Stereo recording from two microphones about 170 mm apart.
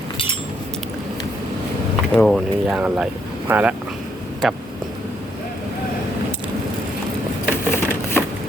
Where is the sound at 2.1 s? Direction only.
5° left (ahead or behind).